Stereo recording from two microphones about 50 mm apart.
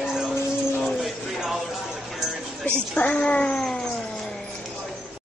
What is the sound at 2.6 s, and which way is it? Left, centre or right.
Speech, left.